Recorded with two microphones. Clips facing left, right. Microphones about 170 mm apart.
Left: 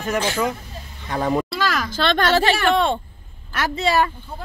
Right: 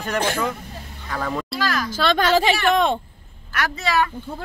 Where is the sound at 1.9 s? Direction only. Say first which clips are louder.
Right 1 dB; 10° right (ahead or behind).